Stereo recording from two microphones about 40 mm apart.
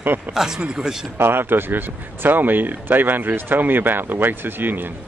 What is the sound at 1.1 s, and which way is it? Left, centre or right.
Speech, right.